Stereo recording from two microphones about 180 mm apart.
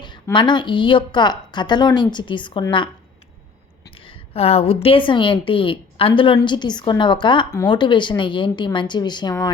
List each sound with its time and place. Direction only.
0.3 s a woman's voice: 25° left (ahead or behind)
4.0 s a woman's voice: 35° left (ahead or behind)